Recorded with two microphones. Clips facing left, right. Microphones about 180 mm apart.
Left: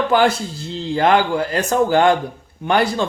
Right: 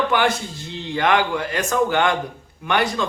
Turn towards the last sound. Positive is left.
turn(degrees=30)  # may be behind; listen again after turning